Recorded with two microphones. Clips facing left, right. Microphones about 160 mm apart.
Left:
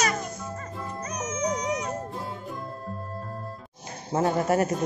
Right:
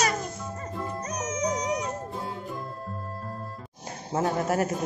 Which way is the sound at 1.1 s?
35° right (ahead or behind).